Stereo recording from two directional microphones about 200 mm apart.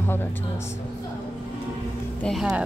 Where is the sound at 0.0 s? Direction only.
10° left (ahead or behind).